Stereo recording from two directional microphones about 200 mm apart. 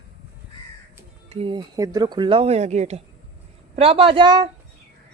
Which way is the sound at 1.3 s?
25° right (ahead or behind).